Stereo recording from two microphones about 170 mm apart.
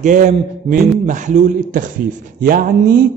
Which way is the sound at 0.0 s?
50° right (ahead or behind).